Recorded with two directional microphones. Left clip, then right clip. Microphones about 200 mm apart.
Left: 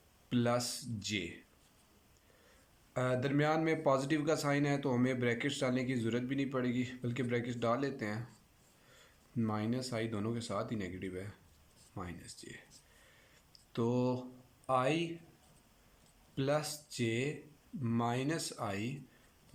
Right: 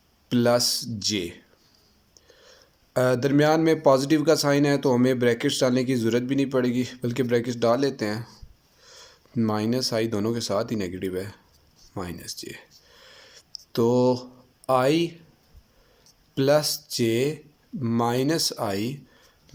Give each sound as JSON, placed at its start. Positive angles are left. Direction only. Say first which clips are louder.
{"t": 0.3, "sound": "a man's voice", "louder": "right 13 dB", "side_deg": -35}
{"t": 2.9, "sound": "a man's voice", "louder": "right 13 dB", "side_deg": -35}
{"t": 13.1, "sound": "a sound", "louder": "right 15 dB", "side_deg": -40}
{"t": 13.7, "sound": "a man's voice", "louder": "right 14 dB", "side_deg": -35}
{"t": 16.3, "sound": "a man's voice", "louder": "right 14 dB", "side_deg": -40}